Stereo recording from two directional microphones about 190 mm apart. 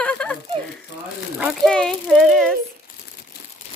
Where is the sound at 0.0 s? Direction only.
5° left (ahead or behind).